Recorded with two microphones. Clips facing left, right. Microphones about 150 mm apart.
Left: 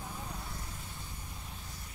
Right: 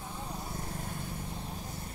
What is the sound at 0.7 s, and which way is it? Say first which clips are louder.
Vehicle: right 8 dB; 50° right (ahead or behind).